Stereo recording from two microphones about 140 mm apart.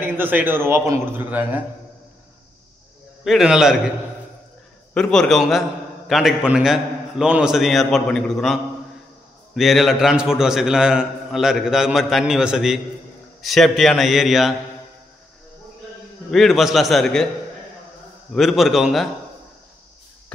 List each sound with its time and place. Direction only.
0.0 s a man's voice: 15° right (ahead or behind)
3.3 s a man's voice: 5° right (ahead or behind)
4.9 s a man's voice: 5° left (ahead or behind)
9.6 s a man's voice: centre (ahead or behind)
16.3 s a man's voice: centre (ahead or behind)
18.3 s a man's voice: centre (ahead or behind)